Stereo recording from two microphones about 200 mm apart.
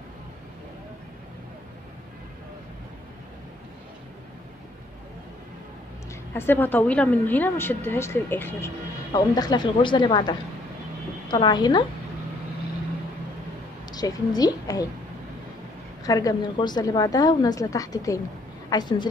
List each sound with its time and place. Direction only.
6.3 s a woman's voice: 10° left (ahead or behind)
13.9 s a woman's voice: 20° left (ahead or behind)
16.0 s a woman's voice: 15° left (ahead or behind)